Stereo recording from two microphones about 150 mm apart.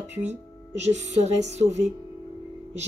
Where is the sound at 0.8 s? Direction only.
50° right (ahead or behind).